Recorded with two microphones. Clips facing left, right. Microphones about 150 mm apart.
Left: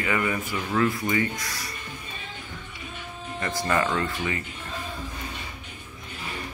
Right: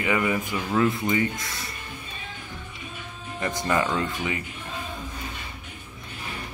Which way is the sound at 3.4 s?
20° right (ahead or behind).